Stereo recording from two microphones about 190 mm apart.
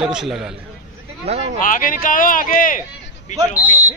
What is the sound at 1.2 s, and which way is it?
Speech, 35° right (ahead or behind).